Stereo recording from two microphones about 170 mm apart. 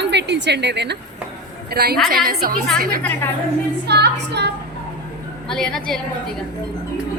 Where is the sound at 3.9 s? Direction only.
80° right.